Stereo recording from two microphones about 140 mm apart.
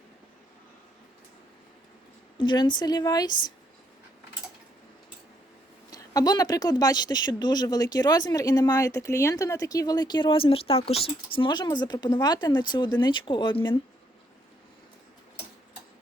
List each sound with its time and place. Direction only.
2.4 s speech: 35° left (ahead or behind)
5.9 s speech: 25° left (ahead or behind)